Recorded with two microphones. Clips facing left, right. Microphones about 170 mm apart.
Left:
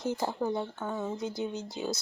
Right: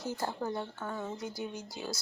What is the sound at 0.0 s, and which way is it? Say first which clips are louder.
Speech: left 4 dB; 20° left (ahead or behind).